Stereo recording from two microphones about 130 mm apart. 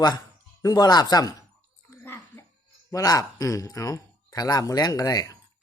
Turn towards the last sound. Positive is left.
turn(degrees=25)  # may be behind; listen again after turning